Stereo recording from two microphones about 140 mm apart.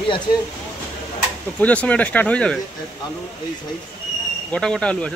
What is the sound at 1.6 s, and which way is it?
Speech, 10° left (ahead or behind).